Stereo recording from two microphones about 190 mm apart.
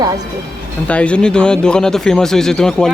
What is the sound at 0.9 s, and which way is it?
Speech, 5° left (ahead or behind).